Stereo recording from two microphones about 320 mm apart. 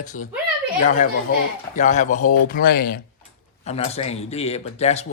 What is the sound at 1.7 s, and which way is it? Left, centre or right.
Speech, left.